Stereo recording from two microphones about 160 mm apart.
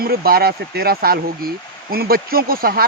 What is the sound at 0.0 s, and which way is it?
Speech, 70° right (ahead or behind).